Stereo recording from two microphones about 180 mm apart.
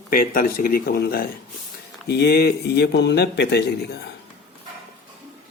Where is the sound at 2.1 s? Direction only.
65° left (ahead or behind).